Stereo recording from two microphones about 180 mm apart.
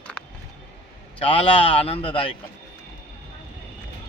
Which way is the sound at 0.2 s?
5° left (ahead or behind).